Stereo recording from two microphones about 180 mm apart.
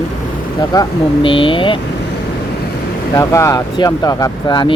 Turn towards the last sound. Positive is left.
turn(degrees=25)  # may be behind; listen again after turning